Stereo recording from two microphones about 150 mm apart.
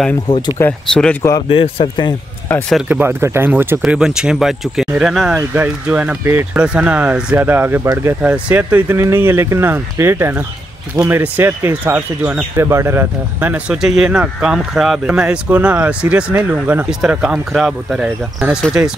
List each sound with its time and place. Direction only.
0.6 s speech: 10° left (ahead or behind)
1.5 s a man's voice: 40° left (ahead or behind)
2.5 s speech: 10° left (ahead or behind)
2.9 s speech: 15° right (ahead or behind)